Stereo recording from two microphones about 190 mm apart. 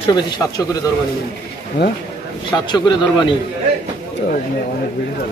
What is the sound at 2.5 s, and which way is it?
Speech, 15° left (ahead or behind).